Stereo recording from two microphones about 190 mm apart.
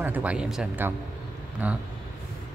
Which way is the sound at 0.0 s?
10° right (ahead or behind).